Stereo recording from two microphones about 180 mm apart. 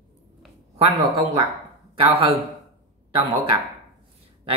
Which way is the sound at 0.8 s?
25° right (ahead or behind).